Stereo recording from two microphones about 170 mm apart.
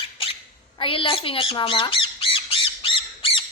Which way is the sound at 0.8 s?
30° left (ahead or behind).